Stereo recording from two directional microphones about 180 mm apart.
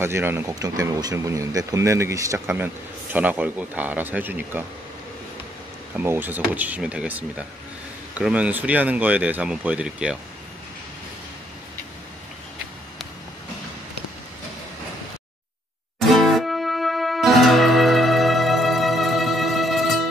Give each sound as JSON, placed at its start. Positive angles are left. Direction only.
{"t": 0.0, "sound": "speech", "side_deg": -15}
{"t": 5.9, "sound": "speech", "side_deg": -10}
{"t": 16.1, "sound": "music", "side_deg": 0}